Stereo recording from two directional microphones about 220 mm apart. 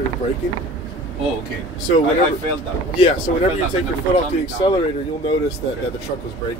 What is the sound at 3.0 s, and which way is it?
Speech, 30° left (ahead or behind).